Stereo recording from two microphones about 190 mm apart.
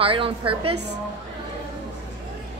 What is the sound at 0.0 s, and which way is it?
Speech, 30° right (ahead or behind).